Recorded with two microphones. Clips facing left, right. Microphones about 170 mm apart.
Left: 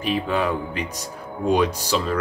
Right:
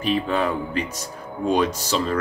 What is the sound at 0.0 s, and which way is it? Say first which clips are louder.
Speech: right 1 dB; 10° left (ahead or behind).